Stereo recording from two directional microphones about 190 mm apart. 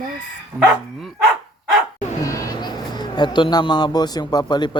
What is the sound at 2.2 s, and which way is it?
Speech, 20° left (ahead or behind).